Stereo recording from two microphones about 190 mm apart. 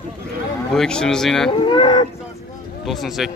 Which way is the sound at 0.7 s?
5° left (ahead or behind).